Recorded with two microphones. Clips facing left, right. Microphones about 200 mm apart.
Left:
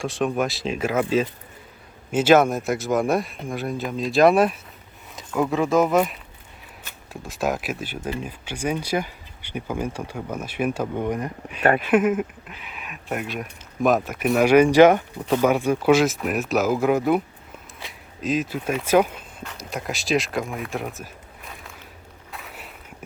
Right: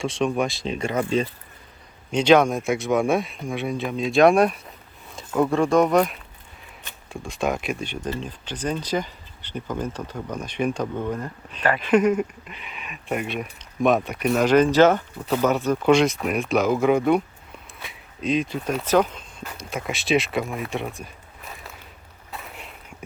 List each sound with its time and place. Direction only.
0.0 s speech: centre (ahead or behind)
11.8 s speech: 5° left (ahead or behind)
22.3 s a sound: centre (ahead or behind)